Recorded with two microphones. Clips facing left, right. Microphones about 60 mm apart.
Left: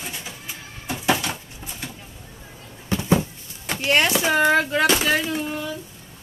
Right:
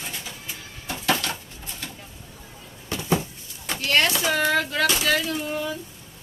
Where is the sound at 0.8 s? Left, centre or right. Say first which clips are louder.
Left 2 dB; centre.